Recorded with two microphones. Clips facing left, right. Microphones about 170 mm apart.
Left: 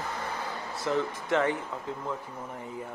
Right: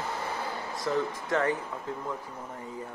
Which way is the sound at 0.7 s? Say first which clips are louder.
Left 1 dB; 25° left (ahead or behind).